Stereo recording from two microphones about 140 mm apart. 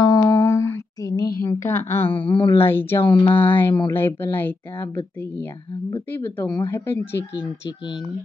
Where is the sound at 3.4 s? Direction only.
15° left (ahead or behind).